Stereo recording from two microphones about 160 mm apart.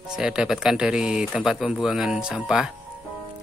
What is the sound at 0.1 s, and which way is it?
Speech, 5° right (ahead or behind).